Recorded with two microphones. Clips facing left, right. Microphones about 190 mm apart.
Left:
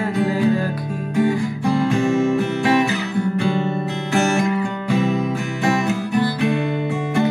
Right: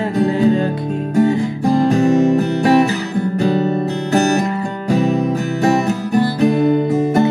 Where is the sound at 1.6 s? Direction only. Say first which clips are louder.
Right 5 dB; 40° right (ahead or behind).